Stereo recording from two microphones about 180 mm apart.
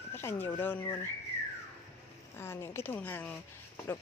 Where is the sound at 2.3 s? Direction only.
15° left (ahead or behind).